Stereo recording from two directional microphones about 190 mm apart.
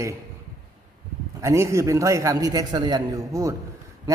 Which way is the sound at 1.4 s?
15° right (ahead or behind).